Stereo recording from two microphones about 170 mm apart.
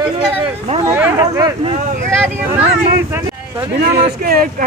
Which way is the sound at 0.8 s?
15° right (ahead or behind).